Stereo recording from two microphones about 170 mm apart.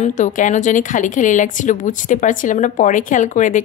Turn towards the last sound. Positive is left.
turn(degrees=50)  # may be behind; listen again after turning